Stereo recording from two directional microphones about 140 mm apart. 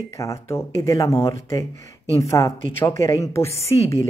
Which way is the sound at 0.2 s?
20° left (ahead or behind).